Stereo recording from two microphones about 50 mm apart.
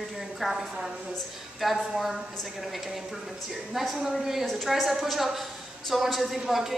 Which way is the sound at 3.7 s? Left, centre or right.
Centre.